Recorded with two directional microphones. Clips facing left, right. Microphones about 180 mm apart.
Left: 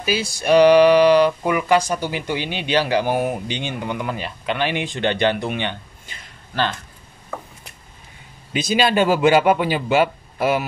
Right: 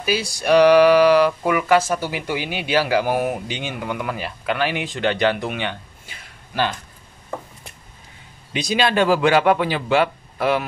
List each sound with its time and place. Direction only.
0.0 s speech: centre (ahead or behind)
8.5 s speech: centre (ahead or behind)